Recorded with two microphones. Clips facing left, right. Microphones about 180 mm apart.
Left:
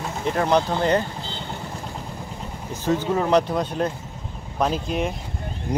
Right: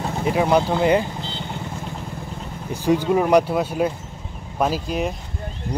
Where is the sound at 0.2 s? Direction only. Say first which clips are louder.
Right 2 dB; 10° right (ahead or behind).